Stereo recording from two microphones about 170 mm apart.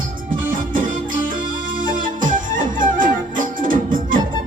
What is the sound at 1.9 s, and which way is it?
Music, 50° right (ahead or behind).